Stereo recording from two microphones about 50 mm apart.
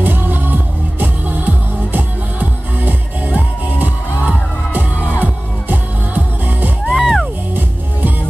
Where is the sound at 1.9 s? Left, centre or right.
Right.